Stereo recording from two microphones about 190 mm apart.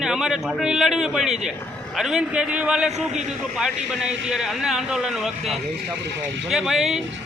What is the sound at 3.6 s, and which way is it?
A man's voice, 5° right (ahead or behind).